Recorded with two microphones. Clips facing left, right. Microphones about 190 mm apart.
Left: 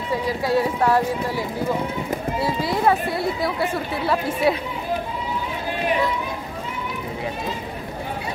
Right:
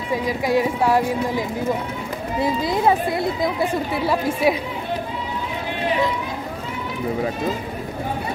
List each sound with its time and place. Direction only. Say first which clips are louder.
0.1 s speech: right 1 dB; 15° right (ahead or behind)
2.4 s speech: right 2 dB; 20° right (ahead or behind)
4.0 s speech: even; 10° right (ahead or behind)